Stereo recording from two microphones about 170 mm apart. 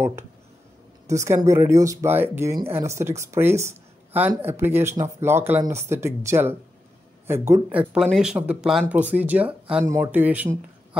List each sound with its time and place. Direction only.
1.0 s speech: 15° right (ahead or behind)
7.9 s speech: 5° right (ahead or behind)
9.8 s speech: 15° right (ahead or behind)